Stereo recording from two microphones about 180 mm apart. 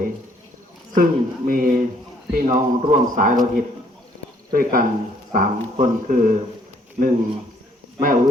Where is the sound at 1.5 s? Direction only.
50° right (ahead or behind).